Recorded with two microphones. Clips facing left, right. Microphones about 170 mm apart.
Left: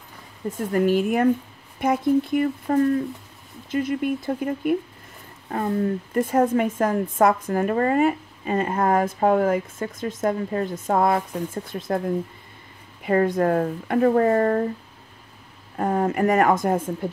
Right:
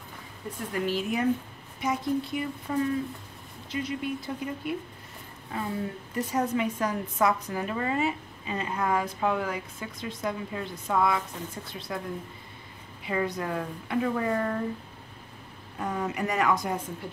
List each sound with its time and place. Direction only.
0.5 s a woman's voice: 45° left (ahead or behind)
13.0 s a woman's voice: 55° left (ahead or behind)
15.8 s a woman's voice: 50° left (ahead or behind)